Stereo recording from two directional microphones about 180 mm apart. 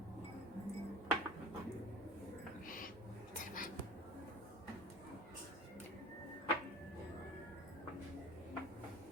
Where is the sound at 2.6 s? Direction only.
50° left (ahead or behind).